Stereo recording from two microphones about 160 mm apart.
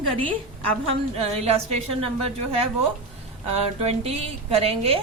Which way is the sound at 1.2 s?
40° right (ahead or behind).